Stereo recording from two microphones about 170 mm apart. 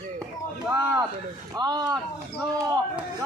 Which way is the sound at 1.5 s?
25° right (ahead or behind).